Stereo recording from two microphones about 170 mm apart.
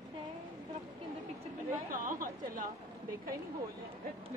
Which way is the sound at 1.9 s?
55° right (ahead or behind).